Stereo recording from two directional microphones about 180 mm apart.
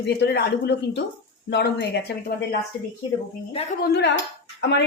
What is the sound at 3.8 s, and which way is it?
Speech, 60° left (ahead or behind).